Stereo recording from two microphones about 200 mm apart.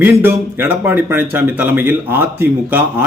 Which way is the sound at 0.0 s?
10° right (ahead or behind).